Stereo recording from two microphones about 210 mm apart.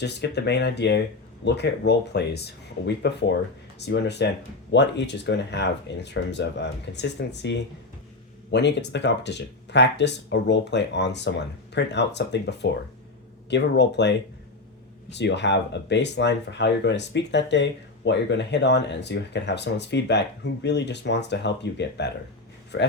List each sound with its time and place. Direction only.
0.0 s speech: 55° left (ahead or behind)
15.2 s speech: 55° left (ahead or behind)